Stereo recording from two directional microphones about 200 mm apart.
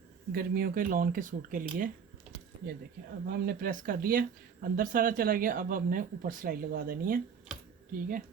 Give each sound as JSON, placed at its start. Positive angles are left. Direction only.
{"t": 0.3, "sound": "speech", "side_deg": -50}
{"t": 3.2, "sound": "speech", "side_deg": -50}